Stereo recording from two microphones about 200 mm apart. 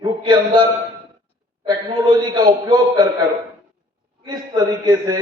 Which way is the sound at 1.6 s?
20° right (ahead or behind).